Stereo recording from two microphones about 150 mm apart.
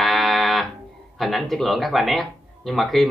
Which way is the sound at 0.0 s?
Centre (ahead or behind).